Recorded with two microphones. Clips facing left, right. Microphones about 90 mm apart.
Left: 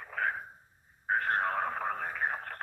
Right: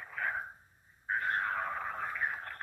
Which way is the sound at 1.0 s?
60° left (ahead or behind).